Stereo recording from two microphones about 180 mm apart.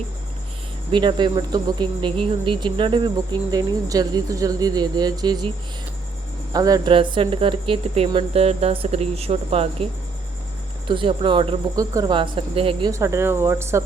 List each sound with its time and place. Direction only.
0.9 s cricket: 25° right (ahead or behind)
6.5 s speech: 20° right (ahead or behind)
10.8 s cricket: 30° right (ahead or behind)
12.9 s speech: 15° right (ahead or behind)